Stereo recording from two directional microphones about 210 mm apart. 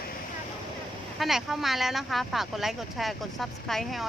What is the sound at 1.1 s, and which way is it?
Speech, centre (ahead or behind).